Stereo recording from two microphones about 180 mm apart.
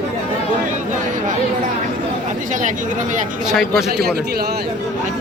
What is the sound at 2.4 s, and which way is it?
Speech, 45° right (ahead or behind).